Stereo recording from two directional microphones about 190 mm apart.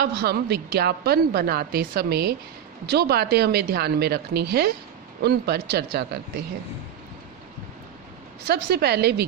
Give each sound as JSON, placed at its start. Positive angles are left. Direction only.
{"t": 0.0, "sound": "a woman's voice", "side_deg": -55}
{"t": 8.4, "sound": "a woman's voice", "side_deg": -60}